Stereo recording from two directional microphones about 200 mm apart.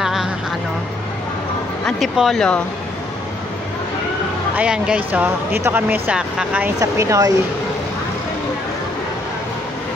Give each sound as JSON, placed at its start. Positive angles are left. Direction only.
{"t": 0.0, "sound": "vehicle", "side_deg": 0}
{"t": 1.9, "sound": "speech", "side_deg": 0}
{"t": 4.6, "sound": "speech", "side_deg": -5}
{"t": 6.8, "sound": "speech", "side_deg": -15}